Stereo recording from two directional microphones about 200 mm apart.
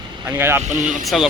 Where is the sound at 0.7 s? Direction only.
40° right (ahead or behind).